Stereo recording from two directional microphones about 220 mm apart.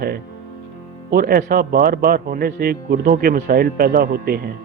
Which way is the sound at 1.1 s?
45° right (ahead or behind).